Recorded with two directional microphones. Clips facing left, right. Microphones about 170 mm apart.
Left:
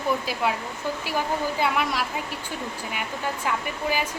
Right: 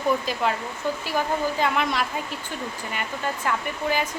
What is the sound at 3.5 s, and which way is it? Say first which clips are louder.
Speech: right 1 dB; 10° left (ahead or behind).